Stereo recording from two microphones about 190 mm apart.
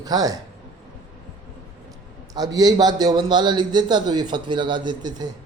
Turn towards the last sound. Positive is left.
turn(degrees=-20)  # may be behind; listen again after turning